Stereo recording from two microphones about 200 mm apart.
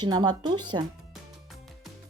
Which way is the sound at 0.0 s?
20° right (ahead or behind).